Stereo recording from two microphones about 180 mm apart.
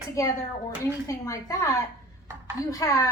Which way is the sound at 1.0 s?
20° left (ahead or behind).